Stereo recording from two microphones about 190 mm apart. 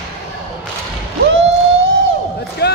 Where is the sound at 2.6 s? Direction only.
60° left (ahead or behind).